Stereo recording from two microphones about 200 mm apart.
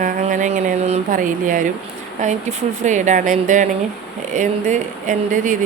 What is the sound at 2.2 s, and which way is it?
A woman's voice, 35° right (ahead or behind).